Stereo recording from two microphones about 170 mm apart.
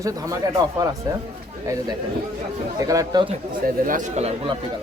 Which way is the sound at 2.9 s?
20° right (ahead or behind).